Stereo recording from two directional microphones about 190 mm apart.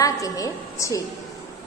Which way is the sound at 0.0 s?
15° left (ahead or behind).